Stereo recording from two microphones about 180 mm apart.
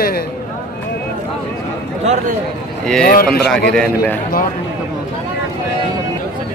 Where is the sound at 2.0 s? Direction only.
40° right (ahead or behind).